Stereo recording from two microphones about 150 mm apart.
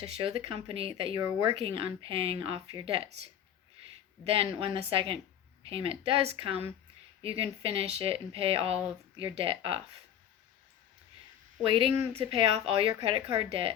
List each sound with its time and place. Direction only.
0.2 s speech: 40° right (ahead or behind)
4.2 s speech: 40° right (ahead or behind)
11.6 s speech: 35° right (ahead or behind)